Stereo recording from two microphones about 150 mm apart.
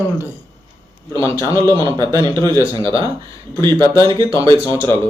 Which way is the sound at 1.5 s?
20° left (ahead or behind).